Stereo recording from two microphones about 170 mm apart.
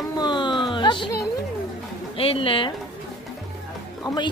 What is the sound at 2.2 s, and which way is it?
Speech, 35° left (ahead or behind).